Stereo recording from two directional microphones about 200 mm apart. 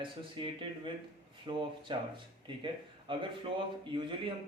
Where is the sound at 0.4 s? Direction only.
25° right (ahead or behind).